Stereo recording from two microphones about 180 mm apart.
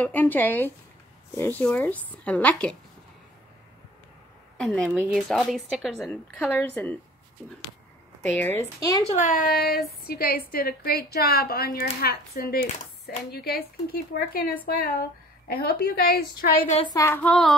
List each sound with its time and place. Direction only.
0.0 s child singing: 10° left (ahead or behind)
4.6 s a woman's voice: 5° left (ahead or behind)
6.5 s child singing: 10° left (ahead or behind)
8.3 s child singing: 10° left (ahead or behind)
9.1 s speech: 45° left (ahead or behind)
16.7 s child singing: 25° left (ahead or behind); by 17.6 s 5° left (ahead or behind)